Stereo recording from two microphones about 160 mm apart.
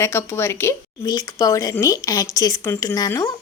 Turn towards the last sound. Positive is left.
turn(degrees=20)  # may be behind; listen again after turning